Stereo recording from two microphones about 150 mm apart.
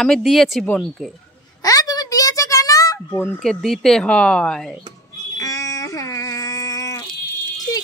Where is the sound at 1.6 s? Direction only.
25° left (ahead or behind).